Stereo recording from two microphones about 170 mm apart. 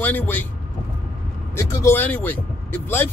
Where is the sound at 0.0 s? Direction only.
10° left (ahead or behind).